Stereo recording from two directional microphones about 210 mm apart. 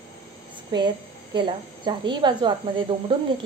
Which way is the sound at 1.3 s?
20° right (ahead or behind).